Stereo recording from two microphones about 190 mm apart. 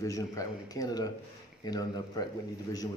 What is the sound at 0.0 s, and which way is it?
A man's voice, 15° left (ahead or behind).